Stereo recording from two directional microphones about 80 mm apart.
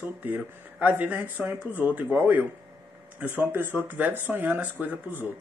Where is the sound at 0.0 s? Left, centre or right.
Right.